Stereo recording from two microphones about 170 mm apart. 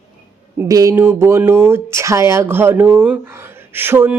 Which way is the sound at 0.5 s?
15° right (ahead or behind).